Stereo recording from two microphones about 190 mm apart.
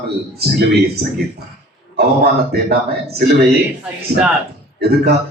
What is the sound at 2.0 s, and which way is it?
A man's voice, 55° right (ahead or behind).